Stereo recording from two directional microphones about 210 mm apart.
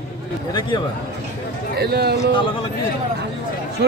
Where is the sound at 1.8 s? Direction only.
50° right (ahead or behind).